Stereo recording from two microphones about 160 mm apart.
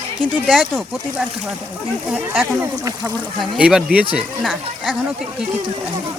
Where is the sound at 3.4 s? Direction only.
5° right (ahead or behind).